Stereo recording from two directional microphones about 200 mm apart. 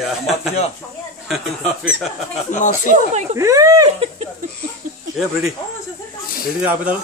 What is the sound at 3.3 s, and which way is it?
Speech, 15° right (ahead or behind).